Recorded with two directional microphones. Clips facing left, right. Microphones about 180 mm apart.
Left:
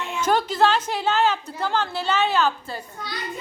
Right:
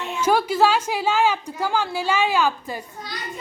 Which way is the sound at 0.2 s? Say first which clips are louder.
Right 2 dB; 10° right (ahead or behind).